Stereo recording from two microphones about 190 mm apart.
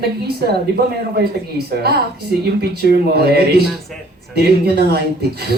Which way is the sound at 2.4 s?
55° right (ahead or behind).